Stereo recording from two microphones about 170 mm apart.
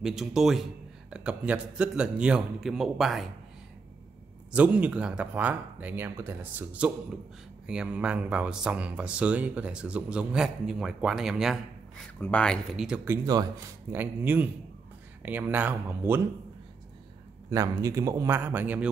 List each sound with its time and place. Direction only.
0.0 s speech: centre (ahead or behind)
4.5 s speech: 10° right (ahead or behind)
17.5 s speech: 20° right (ahead or behind)